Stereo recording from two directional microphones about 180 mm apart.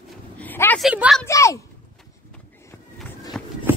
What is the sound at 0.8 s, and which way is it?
Speech, 5° right (ahead or behind).